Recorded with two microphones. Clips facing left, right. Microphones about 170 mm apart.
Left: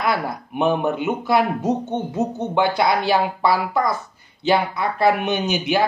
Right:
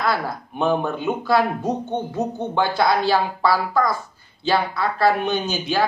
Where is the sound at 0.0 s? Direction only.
20° left (ahead or behind).